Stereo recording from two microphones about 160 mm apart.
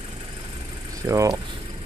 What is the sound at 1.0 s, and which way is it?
Speech, 20° right (ahead or behind).